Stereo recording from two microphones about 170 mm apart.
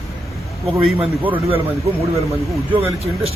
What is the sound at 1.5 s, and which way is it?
A man's voice, 35° right (ahead or behind).